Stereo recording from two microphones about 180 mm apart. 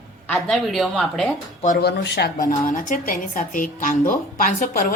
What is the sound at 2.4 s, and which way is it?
A woman's voice, 45° left (ahead or behind).